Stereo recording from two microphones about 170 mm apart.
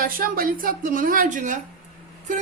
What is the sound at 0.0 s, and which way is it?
A woman's voice, 60° right (ahead or behind).